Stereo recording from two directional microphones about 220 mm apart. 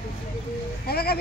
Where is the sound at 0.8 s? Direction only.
45° left (ahead or behind).